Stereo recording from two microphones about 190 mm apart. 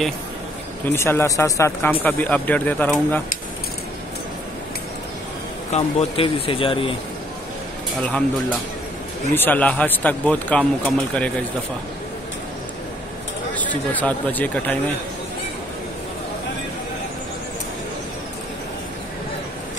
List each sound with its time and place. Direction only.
0.8 s speech: 15° left (ahead or behind)
5.7 s speech: 35° left (ahead or behind)
9.3 s speech: 10° left (ahead or behind)
13.6 s speech: 10° left (ahead or behind)